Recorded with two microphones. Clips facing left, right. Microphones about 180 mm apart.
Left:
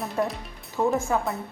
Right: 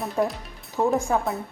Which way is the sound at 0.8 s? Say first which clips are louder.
Right 1 dB; 15° right (ahead or behind).